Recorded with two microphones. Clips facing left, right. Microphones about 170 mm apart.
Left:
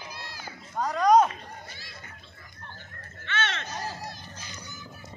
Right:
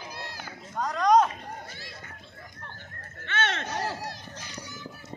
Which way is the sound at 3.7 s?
70° right (ahead or behind).